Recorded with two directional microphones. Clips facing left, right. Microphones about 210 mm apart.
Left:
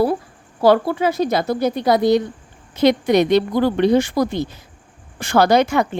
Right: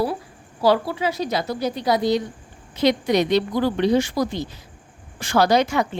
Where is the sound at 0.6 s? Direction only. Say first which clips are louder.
Left 5 dB; 50° left (ahead or behind).